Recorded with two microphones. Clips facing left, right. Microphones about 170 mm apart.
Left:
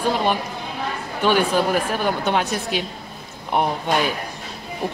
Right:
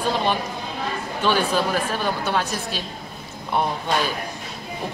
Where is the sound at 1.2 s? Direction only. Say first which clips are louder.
Left 3 dB; 15° left (ahead or behind).